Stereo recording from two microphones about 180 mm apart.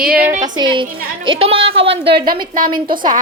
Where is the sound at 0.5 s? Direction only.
25° right (ahead or behind).